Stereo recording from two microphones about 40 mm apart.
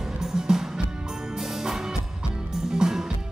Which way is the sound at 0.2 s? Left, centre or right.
Centre.